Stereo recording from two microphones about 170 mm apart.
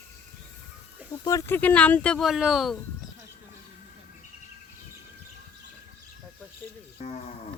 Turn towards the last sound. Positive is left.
turn(degrees=40)  # may be behind; listen again after turning